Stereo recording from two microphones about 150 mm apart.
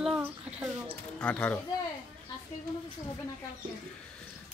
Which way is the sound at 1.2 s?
5° left (ahead or behind).